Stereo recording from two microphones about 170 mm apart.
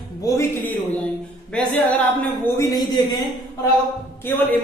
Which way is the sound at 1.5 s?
10° left (ahead or behind).